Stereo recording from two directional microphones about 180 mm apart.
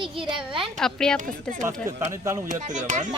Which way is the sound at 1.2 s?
50° right (ahead or behind).